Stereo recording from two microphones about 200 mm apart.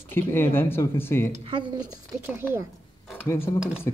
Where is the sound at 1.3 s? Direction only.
25° right (ahead or behind).